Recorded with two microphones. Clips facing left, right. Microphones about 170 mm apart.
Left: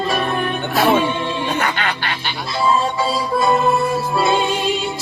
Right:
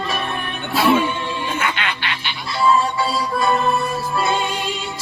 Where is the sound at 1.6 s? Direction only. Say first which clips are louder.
Left 3 dB; 40° left (ahead or behind).